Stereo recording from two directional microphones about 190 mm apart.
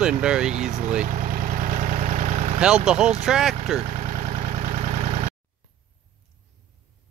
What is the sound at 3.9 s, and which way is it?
Vehicle, 40° right (ahead or behind).